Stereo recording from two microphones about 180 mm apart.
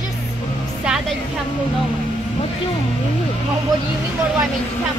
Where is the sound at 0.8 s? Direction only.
5° right (ahead or behind).